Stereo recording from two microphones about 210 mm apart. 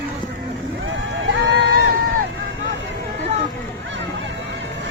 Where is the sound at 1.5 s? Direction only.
55° right (ahead or behind).